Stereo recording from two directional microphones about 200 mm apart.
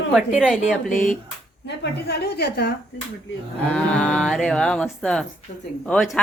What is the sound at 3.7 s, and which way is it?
A woman's voice, 5° left (ahead or behind).